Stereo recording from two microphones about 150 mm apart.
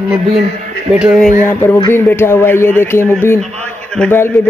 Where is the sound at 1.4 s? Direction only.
15° left (ahead or behind).